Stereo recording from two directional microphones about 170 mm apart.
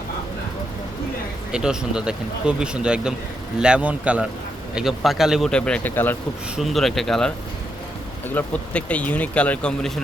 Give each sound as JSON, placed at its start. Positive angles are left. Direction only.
{"t": 1.5, "sound": "a man's voice", "side_deg": -5}
{"t": 6.6, "sound": "speech", "side_deg": 0}